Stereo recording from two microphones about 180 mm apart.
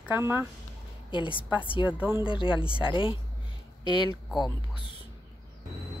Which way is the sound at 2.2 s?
30° left (ahead or behind).